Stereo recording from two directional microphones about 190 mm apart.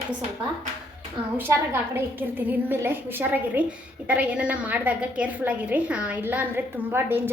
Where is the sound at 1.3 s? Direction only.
10° right (ahead or behind).